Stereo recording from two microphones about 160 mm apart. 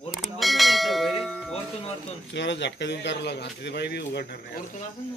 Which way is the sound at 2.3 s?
90° left.